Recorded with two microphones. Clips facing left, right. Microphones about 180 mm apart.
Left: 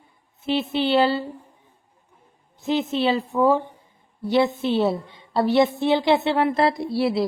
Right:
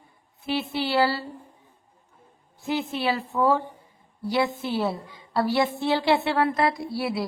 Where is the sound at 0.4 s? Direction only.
20° left (ahead or behind).